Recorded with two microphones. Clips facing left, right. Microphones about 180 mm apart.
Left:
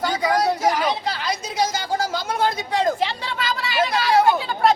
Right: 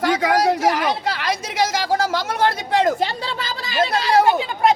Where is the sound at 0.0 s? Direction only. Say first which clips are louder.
Right 3 dB; 85° right.